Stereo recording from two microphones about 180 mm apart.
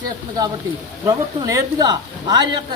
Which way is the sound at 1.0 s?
20° right (ahead or behind).